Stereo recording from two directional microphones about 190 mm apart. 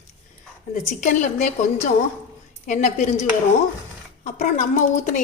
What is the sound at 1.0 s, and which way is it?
A woman's voice, 40° left (ahead or behind).